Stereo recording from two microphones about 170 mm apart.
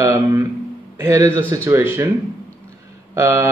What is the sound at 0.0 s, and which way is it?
Speech, 15° right (ahead or behind).